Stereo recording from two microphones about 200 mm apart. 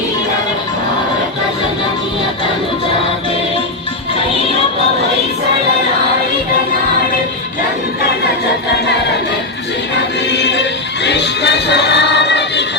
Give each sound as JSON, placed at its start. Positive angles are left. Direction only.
{"t": 10.3, "sound": "music", "side_deg": 60}